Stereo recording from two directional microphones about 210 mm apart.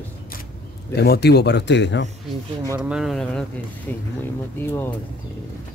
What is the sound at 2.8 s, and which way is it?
Speech, 5° right (ahead or behind).